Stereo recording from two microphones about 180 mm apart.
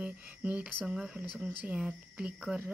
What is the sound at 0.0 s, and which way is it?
Speech, 10° right (ahead or behind).